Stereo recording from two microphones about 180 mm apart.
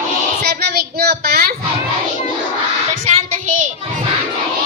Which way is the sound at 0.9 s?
60° right (ahead or behind).